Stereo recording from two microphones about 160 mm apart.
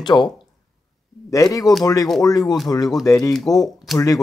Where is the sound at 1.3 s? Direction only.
20° left (ahead or behind).